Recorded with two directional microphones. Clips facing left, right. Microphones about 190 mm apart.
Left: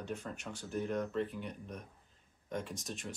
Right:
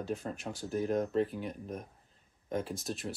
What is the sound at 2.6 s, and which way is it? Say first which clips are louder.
Speech: right 5 dB; 35° right (ahead or behind).